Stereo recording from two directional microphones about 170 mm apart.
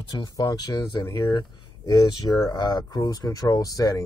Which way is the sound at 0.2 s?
25° left (ahead or behind).